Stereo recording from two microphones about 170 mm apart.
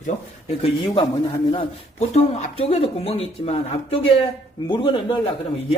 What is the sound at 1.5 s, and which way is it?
Speech, 35° left (ahead or behind).